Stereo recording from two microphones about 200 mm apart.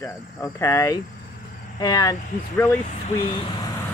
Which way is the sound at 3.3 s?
25° left (ahead or behind).